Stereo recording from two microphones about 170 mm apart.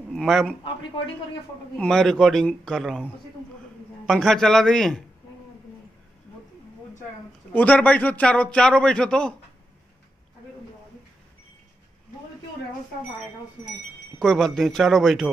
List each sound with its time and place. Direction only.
0.1 s a man's voice: centre (ahead or behind)
1.8 s a man's voice: 5° left (ahead or behind)
7.5 s a man's voice: 10° left (ahead or behind)
14.2 s a man's voice: centre (ahead or behind)